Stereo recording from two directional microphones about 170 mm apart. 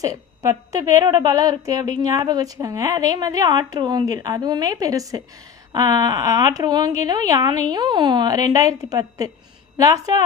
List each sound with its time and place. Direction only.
0.0 s a woman's voice: 20° right (ahead or behind)